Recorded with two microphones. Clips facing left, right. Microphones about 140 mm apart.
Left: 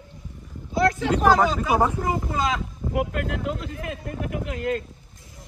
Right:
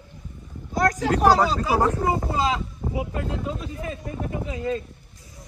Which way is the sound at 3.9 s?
70° left (ahead or behind).